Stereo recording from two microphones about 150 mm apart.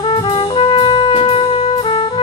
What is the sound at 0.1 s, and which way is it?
Brass instrument, 35° left (ahead or behind).